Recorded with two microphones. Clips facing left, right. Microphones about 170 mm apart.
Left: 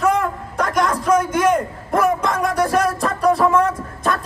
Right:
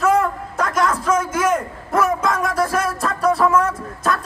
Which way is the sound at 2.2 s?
Centre (ahead or behind).